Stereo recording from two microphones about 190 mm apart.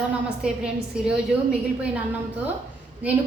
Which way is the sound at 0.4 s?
5° right (ahead or behind).